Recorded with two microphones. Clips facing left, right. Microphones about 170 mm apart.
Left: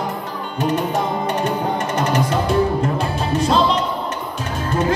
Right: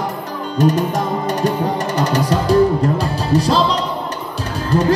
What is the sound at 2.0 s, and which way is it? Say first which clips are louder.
Music: right 2 dB; 35° right (ahead or behind).